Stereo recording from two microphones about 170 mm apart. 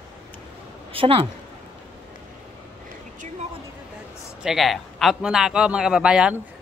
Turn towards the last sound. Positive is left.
turn(degrees=-5)  # may be behind; listen again after turning